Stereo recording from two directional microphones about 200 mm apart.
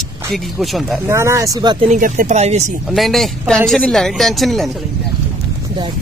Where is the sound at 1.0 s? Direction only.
15° right (ahead or behind).